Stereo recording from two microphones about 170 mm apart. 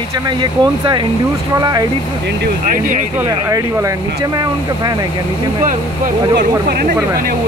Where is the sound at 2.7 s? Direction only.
50° right (ahead or behind).